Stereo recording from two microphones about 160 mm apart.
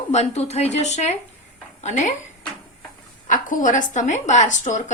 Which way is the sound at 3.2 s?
55° left (ahead or behind).